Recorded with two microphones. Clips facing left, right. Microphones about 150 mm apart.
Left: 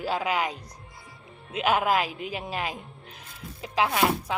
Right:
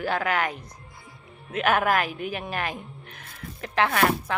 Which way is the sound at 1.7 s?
10° left (ahead or behind).